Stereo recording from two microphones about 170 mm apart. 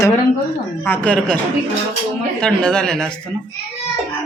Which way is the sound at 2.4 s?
5° left (ahead or behind).